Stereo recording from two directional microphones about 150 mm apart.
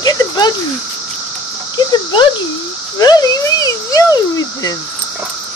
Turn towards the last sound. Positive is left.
turn(degrees=25)  # may be behind; listen again after turning